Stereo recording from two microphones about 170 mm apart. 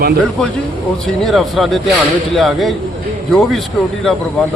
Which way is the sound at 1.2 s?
Centre (ahead or behind).